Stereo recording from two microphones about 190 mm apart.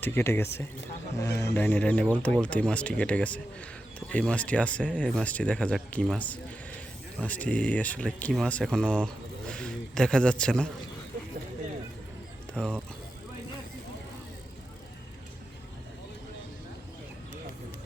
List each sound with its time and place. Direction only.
0.0 s speech: 10° left (ahead or behind)
12.5 s speech: 5° left (ahead or behind)